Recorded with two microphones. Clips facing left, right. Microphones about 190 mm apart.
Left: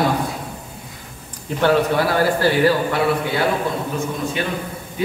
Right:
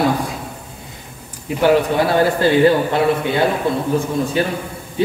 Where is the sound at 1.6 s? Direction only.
15° right (ahead or behind).